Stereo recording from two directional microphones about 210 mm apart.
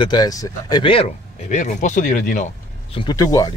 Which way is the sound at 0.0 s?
20° left (ahead or behind).